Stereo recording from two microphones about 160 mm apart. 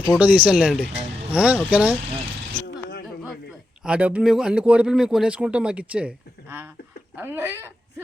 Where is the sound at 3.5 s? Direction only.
5° right (ahead or behind).